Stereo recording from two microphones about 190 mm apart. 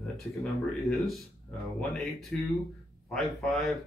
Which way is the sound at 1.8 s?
Centre (ahead or behind).